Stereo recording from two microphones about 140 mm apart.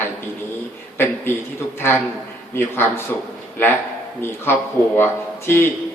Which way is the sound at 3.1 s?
15° left (ahead or behind).